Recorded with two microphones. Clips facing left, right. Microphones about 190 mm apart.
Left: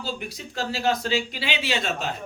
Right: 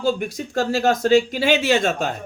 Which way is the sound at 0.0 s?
50° right (ahead or behind).